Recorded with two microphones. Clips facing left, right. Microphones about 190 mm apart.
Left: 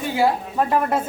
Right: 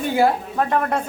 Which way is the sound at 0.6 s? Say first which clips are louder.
Left 1 dB; 5° left (ahead or behind).